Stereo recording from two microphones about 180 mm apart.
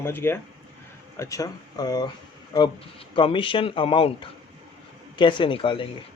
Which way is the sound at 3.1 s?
30° left (ahead or behind).